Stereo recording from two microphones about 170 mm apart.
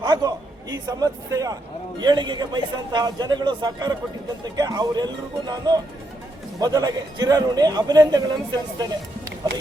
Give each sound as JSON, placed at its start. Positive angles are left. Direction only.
{"t": 0.0, "sound": "a man's voice", "side_deg": -20}